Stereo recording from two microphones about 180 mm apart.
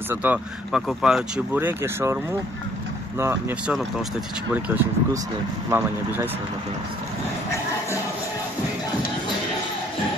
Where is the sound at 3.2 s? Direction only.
15° right (ahead or behind).